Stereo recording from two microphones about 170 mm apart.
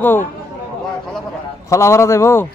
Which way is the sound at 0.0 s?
10° left (ahead or behind).